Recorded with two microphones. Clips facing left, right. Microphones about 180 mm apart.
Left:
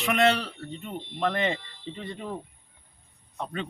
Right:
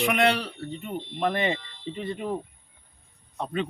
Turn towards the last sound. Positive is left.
turn(degrees=-20)  # may be behind; listen again after turning